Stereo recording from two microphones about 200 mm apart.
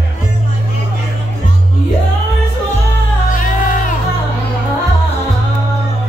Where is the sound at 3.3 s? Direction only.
40° left (ahead or behind).